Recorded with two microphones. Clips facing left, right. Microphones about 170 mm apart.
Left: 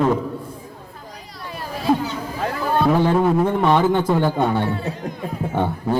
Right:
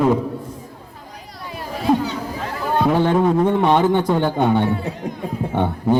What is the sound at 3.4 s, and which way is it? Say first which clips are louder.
Speech: right 1 dB; 20° right (ahead or behind).